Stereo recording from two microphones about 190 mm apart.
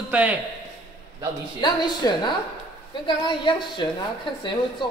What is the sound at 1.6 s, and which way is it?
A man's voice, 20° left (ahead or behind).